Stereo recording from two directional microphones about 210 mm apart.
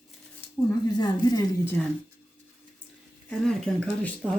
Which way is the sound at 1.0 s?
20° left (ahead or behind).